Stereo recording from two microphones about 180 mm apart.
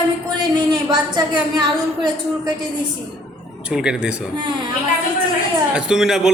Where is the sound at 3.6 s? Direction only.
5° right (ahead or behind).